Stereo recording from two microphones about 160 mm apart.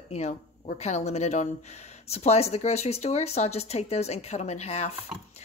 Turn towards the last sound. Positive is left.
turn(degrees=40)  # may be behind; listen again after turning